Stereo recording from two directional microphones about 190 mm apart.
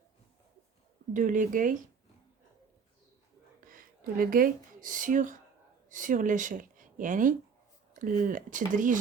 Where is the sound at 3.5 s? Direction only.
45° right (ahead or behind).